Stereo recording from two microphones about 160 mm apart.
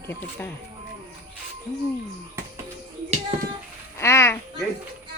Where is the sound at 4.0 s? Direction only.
15° left (ahead or behind).